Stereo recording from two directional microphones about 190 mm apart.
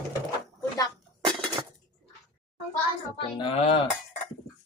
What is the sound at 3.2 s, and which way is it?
Speech, 25° left (ahead or behind).